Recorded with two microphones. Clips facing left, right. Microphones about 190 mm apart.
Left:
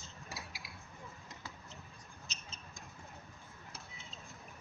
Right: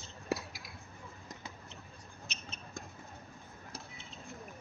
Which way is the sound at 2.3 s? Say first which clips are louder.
Right 10 dB; 60° right (ahead or behind).